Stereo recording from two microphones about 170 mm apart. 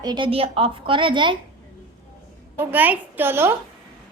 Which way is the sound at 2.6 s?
10° right (ahead or behind).